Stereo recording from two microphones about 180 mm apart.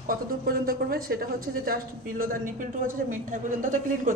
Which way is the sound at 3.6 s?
45° right (ahead or behind).